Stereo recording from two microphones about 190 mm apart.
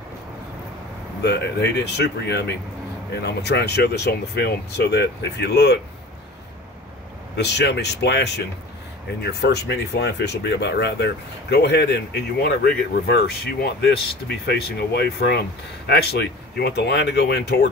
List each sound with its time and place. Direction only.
1.2 s speech: 60° left (ahead or behind)
7.3 s speech: 65° left (ahead or behind)